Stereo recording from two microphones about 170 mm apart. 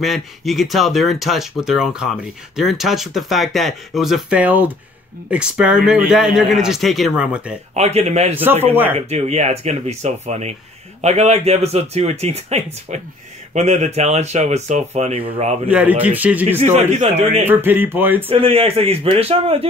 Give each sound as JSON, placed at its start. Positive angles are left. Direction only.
{"t": 0.0, "sound": "speech", "side_deg": 0}
{"t": 7.7, "sound": "a man's voice", "side_deg": -40}
{"t": 15.7, "sound": "a man's voice", "side_deg": -10}
{"t": 16.5, "sound": "a man's voice", "side_deg": -40}
{"t": 17.5, "sound": "a man's voice", "side_deg": -10}
{"t": 18.3, "sound": "a man's voice", "side_deg": -35}